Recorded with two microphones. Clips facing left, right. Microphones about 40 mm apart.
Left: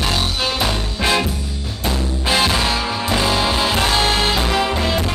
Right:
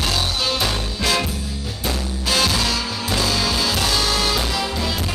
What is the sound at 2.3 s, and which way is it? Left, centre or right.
Music, left.